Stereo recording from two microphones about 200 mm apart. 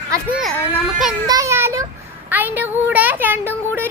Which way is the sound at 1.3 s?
15° right (ahead or behind).